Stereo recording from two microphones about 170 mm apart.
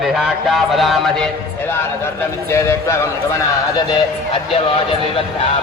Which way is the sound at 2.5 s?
15° left (ahead or behind).